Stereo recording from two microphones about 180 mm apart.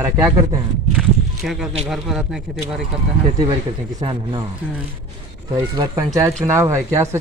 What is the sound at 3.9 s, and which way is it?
Speech, 25° right (ahead or behind).